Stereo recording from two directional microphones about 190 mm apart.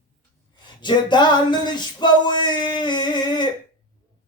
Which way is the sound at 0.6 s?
25° left (ahead or behind).